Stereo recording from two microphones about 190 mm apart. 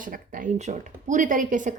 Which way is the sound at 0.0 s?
45° right (ahead or behind).